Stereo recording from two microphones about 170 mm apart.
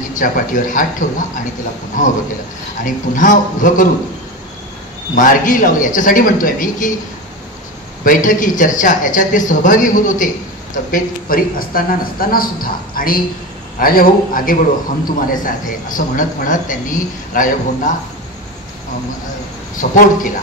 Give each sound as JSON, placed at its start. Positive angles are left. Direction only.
{"t": 0.1, "sound": "speech", "side_deg": 50}
{"t": 5.1, "sound": "speech", "side_deg": 50}
{"t": 8.0, "sound": "a man's voice", "side_deg": 50}
{"t": 19.8, "sound": "speech", "side_deg": 50}